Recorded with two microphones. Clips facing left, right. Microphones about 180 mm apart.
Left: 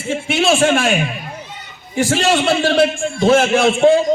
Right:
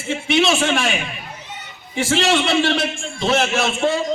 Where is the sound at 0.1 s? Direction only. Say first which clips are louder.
Left 2 dB; 50° left (ahead or behind).